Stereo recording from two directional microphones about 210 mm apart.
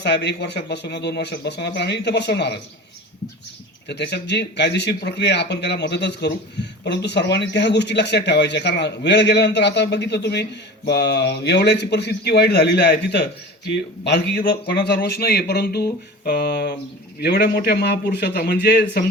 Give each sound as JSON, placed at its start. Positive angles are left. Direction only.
{"t": 0.0, "sound": "speech", "side_deg": 55}
{"t": 3.8, "sound": "speech", "side_deg": 55}